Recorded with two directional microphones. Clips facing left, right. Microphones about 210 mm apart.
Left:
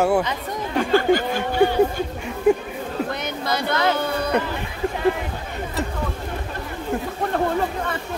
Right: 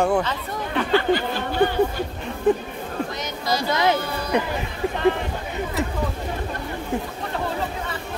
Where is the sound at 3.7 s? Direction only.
20° right (ahead or behind).